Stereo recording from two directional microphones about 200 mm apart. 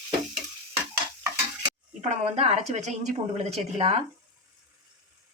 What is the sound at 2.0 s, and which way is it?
A woman's voice, 30° right (ahead or behind).